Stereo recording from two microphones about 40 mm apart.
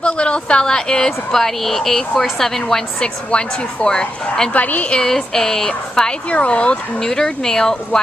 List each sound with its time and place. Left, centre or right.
0.0 s a woman's voice: left; by 2.8 s centre
3.0 s a woman's voice: left
4.6 s a woman's voice: left
5.0 s a woman's voice: centre; by 6.8 s left
7.0 s a woman's voice: centre